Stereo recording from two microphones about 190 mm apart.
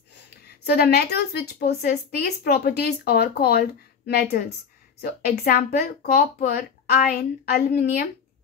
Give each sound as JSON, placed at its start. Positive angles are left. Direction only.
{"t": 0.7, "sound": "a woman's voice", "side_deg": 60}